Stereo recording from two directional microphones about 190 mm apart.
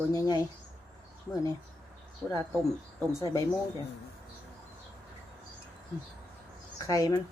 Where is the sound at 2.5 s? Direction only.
15° right (ahead or behind).